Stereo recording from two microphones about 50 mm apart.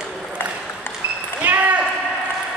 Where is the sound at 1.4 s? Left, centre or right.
Right.